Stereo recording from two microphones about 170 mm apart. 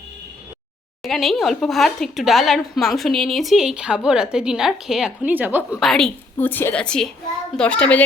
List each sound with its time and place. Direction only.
1.0 s speech: centre (ahead or behind)
5.8 s a woman's voice: centre (ahead or behind)